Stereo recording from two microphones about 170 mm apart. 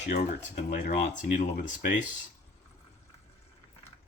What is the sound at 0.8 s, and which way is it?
Speech, 45° left (ahead or behind).